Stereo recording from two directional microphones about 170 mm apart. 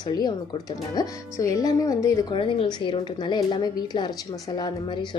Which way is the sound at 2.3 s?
30° left (ahead or behind).